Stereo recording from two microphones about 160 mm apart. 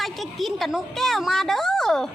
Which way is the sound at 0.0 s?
Centre (ahead or behind).